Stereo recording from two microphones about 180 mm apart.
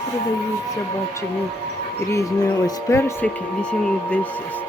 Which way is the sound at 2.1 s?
15° left (ahead or behind).